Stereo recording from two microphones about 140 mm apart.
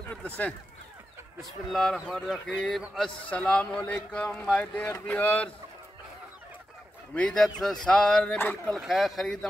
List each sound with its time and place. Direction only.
0.0 s a sound: 10° left (ahead or behind)
1.4 s speech: centre (ahead or behind)
7.2 s speech: 5° left (ahead or behind)
8.7 s speech: centre (ahead or behind)